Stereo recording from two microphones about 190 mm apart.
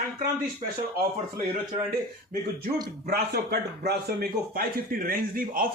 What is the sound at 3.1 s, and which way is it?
A man's voice, 60° right (ahead or behind).